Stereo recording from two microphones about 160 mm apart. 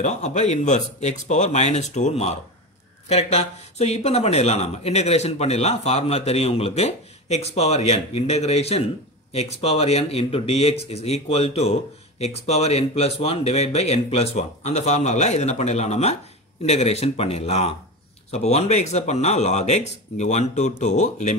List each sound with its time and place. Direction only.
0.0 s speech: 50° left (ahead or behind)